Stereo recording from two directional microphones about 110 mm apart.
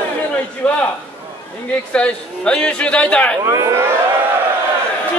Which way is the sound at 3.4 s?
30° right (ahead or behind).